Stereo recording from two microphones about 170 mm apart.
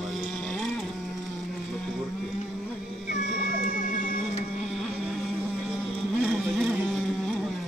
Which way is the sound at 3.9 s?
55° left (ahead or behind).